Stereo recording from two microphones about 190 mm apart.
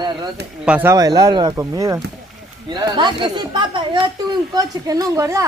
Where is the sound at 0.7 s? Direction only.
10° right (ahead or behind).